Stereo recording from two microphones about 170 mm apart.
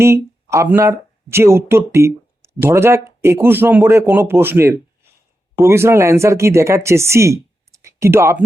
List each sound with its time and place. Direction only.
0.0 s speech: 15° right (ahead or behind)